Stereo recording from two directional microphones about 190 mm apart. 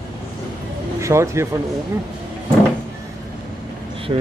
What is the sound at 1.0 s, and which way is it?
Speech, 15° right (ahead or behind).